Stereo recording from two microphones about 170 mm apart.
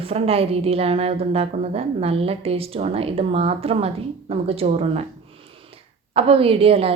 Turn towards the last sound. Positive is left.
turn(degrees=-35)  # may be behind; listen again after turning